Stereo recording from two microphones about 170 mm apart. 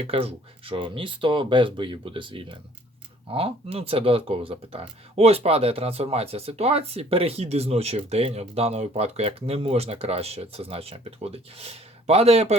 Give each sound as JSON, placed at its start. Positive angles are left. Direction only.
{"t": 0.1, "sound": "speech", "side_deg": -35}